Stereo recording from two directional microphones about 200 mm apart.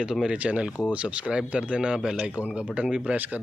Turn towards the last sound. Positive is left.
turn(degrees=-5)  # may be behind; listen again after turning